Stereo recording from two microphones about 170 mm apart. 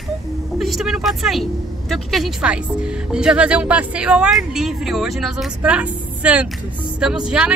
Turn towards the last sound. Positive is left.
turn(degrees=-5)  # may be behind; listen again after turning